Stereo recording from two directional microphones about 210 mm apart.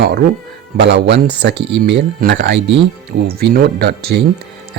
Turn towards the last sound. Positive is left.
turn(degrees=-50)  # may be behind; listen again after turning